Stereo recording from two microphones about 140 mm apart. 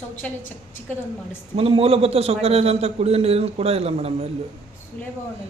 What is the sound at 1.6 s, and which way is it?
A man's voice, 45° right (ahead or behind).